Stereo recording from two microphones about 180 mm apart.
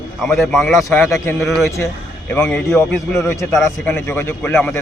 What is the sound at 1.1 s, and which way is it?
A man's voice, 15° left (ahead or behind).